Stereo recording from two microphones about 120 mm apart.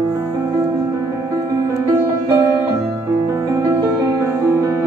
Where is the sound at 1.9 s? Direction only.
20° right (ahead or behind).